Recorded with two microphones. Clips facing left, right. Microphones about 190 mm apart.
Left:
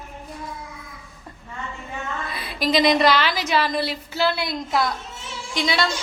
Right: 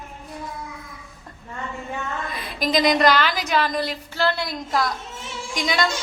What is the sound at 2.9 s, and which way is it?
A woman's voice, 5° left (ahead or behind).